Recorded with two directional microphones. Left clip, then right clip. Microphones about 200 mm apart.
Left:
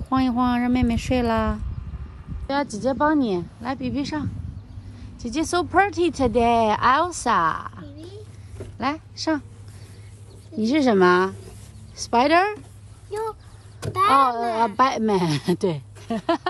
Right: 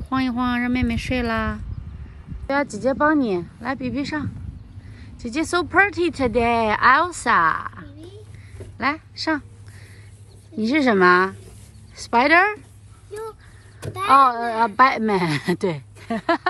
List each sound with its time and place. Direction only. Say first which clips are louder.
0.1 s speech: left 1 dB; 15° left (ahead or behind)
8.0 s a sound: left 1 dB; centre (ahead or behind)
8.7 s a child's voice: right 3 dB; 15° left (ahead or behind)
10.6 s speech: right 1 dB; 10° left (ahead or behind)
13.7 s a child's voice: right 2 dB; centre (ahead or behind)
14.8 s speech: right 6 dB; 10° left (ahead or behind)